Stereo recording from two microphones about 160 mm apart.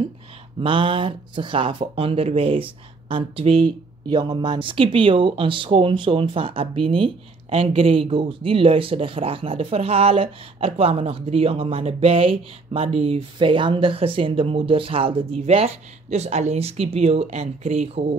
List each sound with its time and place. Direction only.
0.6 s speech: 30° right (ahead or behind)